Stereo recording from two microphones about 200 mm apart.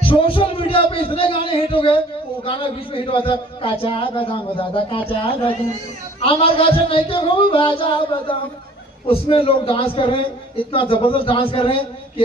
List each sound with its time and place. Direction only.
0.0 s a man's voice: 25° left (ahead or behind)